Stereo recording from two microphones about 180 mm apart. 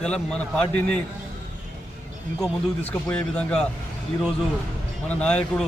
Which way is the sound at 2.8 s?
10° left (ahead or behind).